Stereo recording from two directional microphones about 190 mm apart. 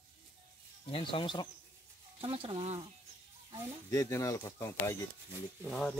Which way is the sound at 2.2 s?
30° right (ahead or behind).